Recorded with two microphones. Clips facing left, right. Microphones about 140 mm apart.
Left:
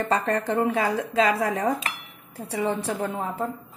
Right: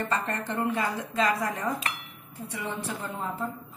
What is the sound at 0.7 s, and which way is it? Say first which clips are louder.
A woman's voice: left 5 dB; 90° left.